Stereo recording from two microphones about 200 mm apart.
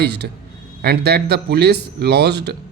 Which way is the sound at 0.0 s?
55° right (ahead or behind).